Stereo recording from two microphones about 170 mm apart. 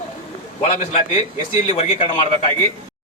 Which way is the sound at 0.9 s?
45° left (ahead or behind).